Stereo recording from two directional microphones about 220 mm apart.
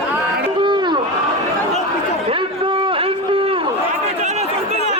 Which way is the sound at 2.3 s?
25° right (ahead or behind).